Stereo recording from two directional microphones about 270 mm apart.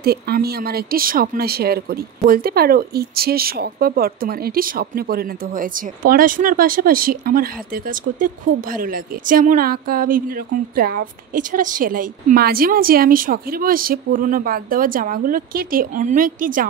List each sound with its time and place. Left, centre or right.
0.0 s speech: right